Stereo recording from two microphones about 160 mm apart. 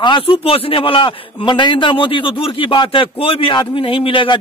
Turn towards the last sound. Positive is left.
turn(degrees=30)  # may be behind; listen again after turning